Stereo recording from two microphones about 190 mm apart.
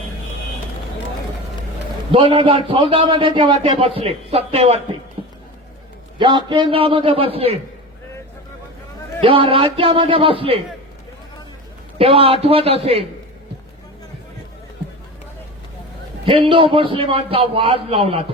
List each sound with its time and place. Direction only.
2.1 s a man's voice: 25° right (ahead or behind)
5.2 s a sound: 30° right (ahead or behind)
6.1 s a man's voice: 25° right (ahead or behind)
9.2 s a man's voice: 30° right (ahead or behind)
11.9 s a man's voice: 30° right (ahead or behind)
16.2 s a man's voice: 25° right (ahead or behind)